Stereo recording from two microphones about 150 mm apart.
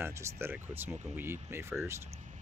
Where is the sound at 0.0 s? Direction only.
15° right (ahead or behind).